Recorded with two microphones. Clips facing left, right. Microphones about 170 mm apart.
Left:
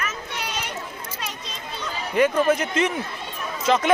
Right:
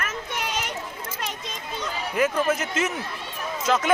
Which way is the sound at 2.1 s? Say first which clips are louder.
Left 4 dB; 5° right (ahead or behind).